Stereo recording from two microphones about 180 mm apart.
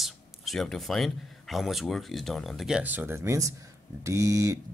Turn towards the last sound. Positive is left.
turn(degrees=-20)  # may be behind; listen again after turning